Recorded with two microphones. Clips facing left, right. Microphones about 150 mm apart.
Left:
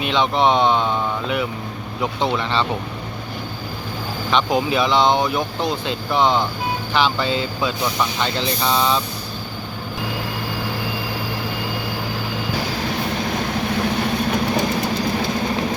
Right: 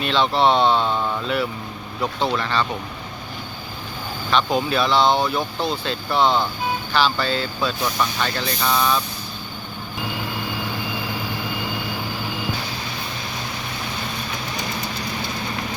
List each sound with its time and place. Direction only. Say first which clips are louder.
0.0 s speech: left 1 dB; 15° left (ahead or behind)
4.3 s speech: left 1 dB; 20° left (ahead or behind)